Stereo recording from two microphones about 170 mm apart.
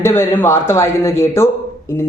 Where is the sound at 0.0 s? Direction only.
15° left (ahead or behind).